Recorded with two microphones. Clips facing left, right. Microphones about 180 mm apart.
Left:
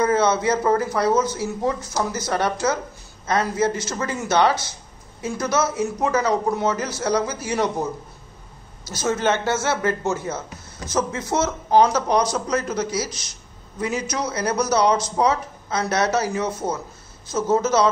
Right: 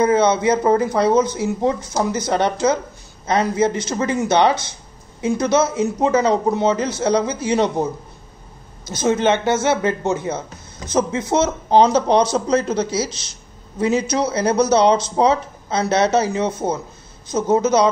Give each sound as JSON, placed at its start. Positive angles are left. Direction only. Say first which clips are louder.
{"t": 0.0, "sound": "speech", "louder": "right 4 dB", "side_deg": -20}